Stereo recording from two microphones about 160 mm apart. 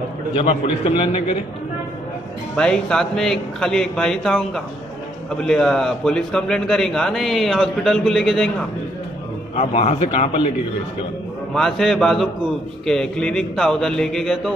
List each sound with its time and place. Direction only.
0.4 s a man's voice: 35° left (ahead or behind)
2.5 s a man's voice: 5° left (ahead or behind)
9.6 s a man's voice: 40° left (ahead or behind)
11.5 s a man's voice: centre (ahead or behind)